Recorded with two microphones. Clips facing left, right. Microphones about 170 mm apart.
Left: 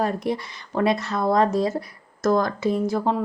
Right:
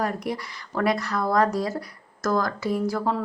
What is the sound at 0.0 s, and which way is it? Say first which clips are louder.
Speech: left 3 dB; 25° left (ahead or behind).